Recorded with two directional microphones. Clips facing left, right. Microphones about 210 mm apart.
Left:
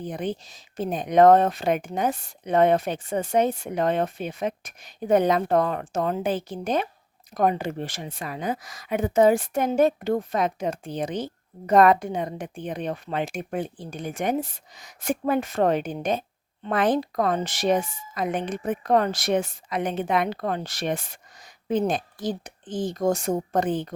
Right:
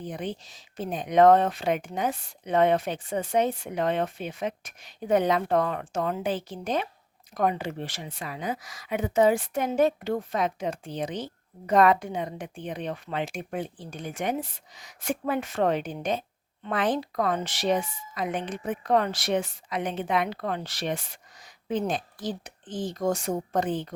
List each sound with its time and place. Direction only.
0.1 s a woman's voice: 45° left (ahead or behind)